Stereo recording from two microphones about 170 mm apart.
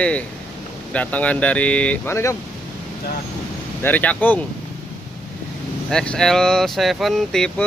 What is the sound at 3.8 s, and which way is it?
Speech, 10° left (ahead or behind).